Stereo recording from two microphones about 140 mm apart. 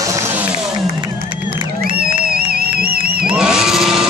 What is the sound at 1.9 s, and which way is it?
Music, 90° right.